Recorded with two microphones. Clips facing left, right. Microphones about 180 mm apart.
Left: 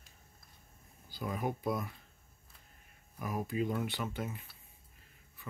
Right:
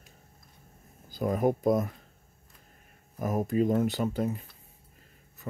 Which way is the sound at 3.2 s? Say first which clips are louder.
Right 8 dB; 45° right (ahead or behind).